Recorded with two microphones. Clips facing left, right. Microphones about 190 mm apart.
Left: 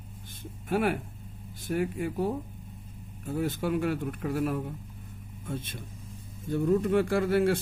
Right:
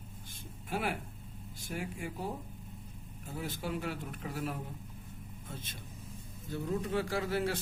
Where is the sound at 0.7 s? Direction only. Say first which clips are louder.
Left 8 dB; 55° left (ahead or behind).